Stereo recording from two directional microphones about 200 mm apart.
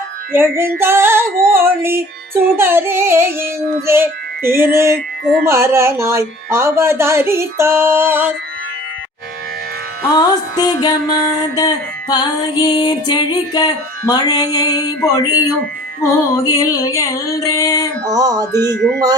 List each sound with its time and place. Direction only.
0.3 s music: 10° right (ahead or behind)
10.2 s music: 20° left (ahead or behind)
18.1 s a sound: 20° right (ahead or behind)